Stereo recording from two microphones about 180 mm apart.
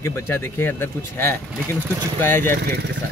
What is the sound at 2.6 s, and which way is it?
Speech, 60° right (ahead or behind).